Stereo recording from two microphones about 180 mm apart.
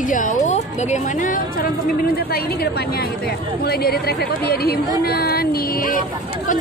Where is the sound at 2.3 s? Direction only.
60° left (ahead or behind).